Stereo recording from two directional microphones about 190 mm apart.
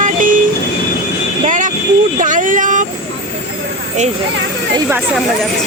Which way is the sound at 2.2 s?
40° right (ahead or behind).